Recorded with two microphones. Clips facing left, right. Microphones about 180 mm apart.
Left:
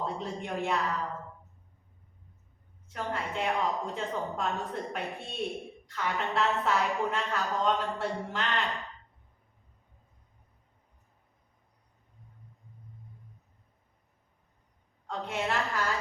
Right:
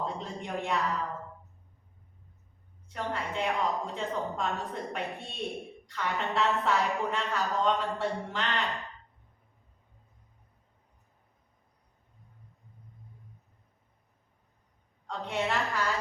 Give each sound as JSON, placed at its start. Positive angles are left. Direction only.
{"t": 0.0, "sound": "a woman's voice", "side_deg": 0}
{"t": 2.9, "sound": "a woman's voice", "side_deg": 0}
{"t": 15.0, "sound": "a woman's voice", "side_deg": 0}